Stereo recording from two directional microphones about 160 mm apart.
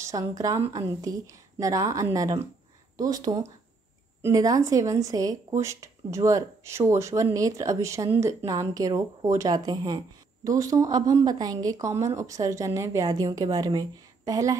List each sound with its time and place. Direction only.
0.0 s speech: 20° right (ahead or behind)